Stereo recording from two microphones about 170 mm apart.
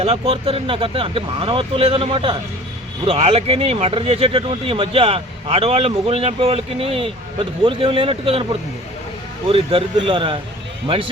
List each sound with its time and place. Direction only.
0.0 s speech: 35° right (ahead or behind)
9.5 s speech: 35° right (ahead or behind)